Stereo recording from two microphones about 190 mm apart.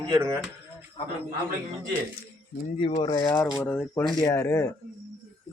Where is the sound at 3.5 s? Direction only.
10° left (ahead or behind).